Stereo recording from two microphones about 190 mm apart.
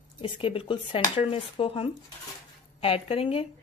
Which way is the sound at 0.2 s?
30° left (ahead or behind).